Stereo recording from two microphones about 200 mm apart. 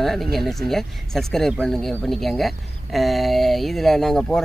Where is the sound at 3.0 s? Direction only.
Centre (ahead or behind).